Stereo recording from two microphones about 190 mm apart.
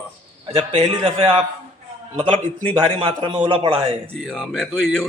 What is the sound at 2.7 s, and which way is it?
A man's voice, 30° right (ahead or behind).